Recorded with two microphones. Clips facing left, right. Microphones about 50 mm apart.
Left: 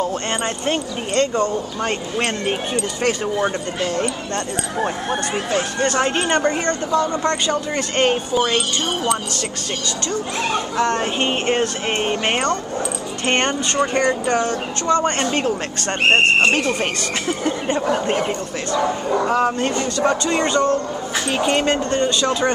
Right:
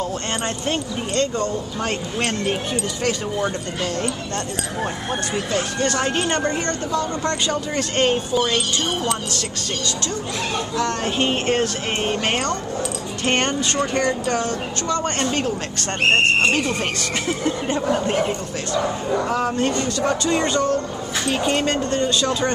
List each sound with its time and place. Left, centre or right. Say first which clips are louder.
0.7 s speech: left 2 dB; left
1.8 s speech: left 1 dB; centre
3.0 s speech: left 4 dB; left
5.3 s speech: left 2 dB; left
10.8 s speech: left 2 dB; centre
17.5 s speech: left 2 dB; centre
17.9 s speech: left 1 dB; centre
19.7 s speech: left 2 dB; left
20.1 s speech: left 1 dB; centre